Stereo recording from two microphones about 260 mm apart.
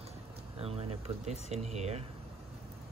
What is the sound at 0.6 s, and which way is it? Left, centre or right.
Speech, right.